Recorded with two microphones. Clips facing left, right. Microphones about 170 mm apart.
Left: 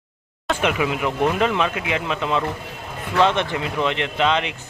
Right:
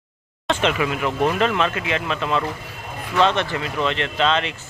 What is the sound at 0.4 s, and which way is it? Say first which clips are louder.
Speech: even; 10° left (ahead or behind).